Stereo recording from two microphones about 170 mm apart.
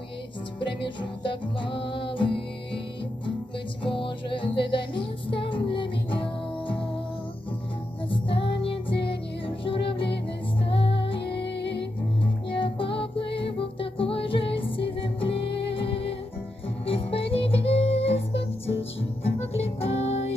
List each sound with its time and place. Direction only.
0.8 s music: 30° left (ahead or behind)
3.8 s music: 30° left (ahead or behind)
8.1 s music: 30° left (ahead or behind)
12.2 s music: 30° left (ahead or behind)